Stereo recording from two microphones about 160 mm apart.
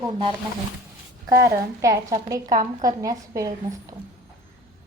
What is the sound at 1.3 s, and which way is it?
A woman's voice, 20° right (ahead or behind).